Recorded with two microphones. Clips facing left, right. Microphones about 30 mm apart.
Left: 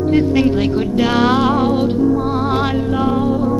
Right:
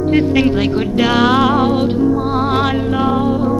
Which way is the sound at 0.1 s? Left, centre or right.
Centre.